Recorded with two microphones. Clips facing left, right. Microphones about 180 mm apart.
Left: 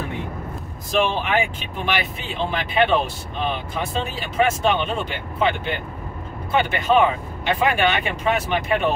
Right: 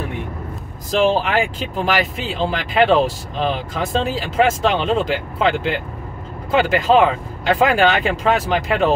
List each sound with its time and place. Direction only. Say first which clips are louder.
1.0 s speech: right 5 dB; 90° right